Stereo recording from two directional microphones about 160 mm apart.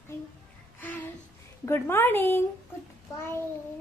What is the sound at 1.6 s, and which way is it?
Speech, 15° left (ahead or behind).